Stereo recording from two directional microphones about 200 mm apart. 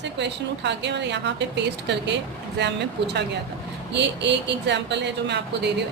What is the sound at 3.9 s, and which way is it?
A woman's voice, 60° right (ahead or behind).